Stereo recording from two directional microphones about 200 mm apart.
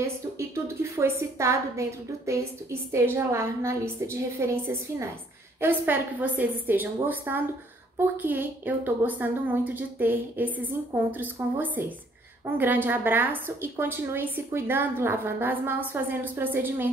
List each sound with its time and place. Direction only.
0.0 s a woman's voice: 15° right (ahead or behind)
5.6 s a woman's voice: 10° right (ahead or behind)